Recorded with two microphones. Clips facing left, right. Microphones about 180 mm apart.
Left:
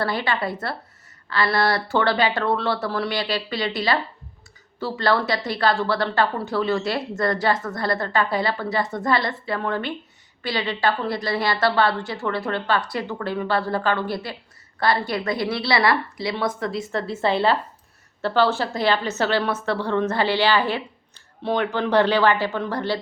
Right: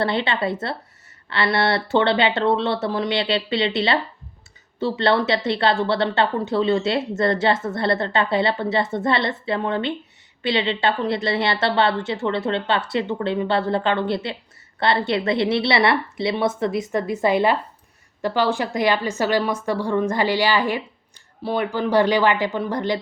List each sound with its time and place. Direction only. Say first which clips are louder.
0.0 s a woman's voice: right 2 dB; 25° right (ahead or behind)